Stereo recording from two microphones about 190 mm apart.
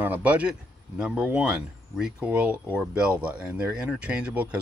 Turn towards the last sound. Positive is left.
turn(degrees=-10)  # may be behind; listen again after turning